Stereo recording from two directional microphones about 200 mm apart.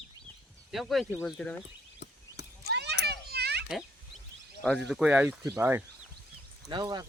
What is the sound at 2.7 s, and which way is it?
Children playing, 60° right (ahead or behind).